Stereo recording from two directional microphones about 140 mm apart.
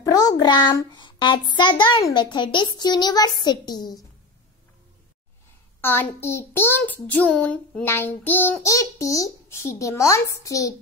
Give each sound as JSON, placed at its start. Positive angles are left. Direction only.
{"t": 0.0, "sound": "a sound", "side_deg": 25}
{"t": 0.9, "sound": "a woman's voice", "side_deg": 35}
{"t": 5.8, "sound": "child singing", "side_deg": 15}
{"t": 8.7, "sound": "a child's voice", "side_deg": 25}